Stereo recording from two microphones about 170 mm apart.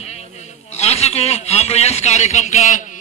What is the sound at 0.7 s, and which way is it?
A man's voice, 40° left (ahead or behind).